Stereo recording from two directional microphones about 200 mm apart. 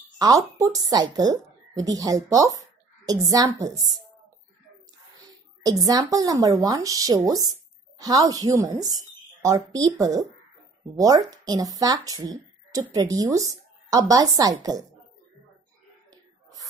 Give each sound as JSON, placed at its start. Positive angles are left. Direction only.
{"t": 0.2, "sound": "a woman's voice", "side_deg": -20}
{"t": 5.7, "sound": "a woman's voice", "side_deg": -20}